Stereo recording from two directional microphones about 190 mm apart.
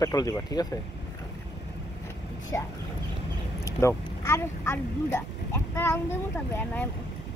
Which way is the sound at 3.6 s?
15° left (ahead or behind).